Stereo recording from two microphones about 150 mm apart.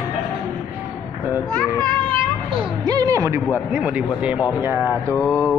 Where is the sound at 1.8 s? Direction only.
30° right (ahead or behind).